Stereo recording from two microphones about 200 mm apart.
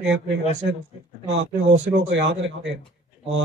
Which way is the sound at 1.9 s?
65° right (ahead or behind).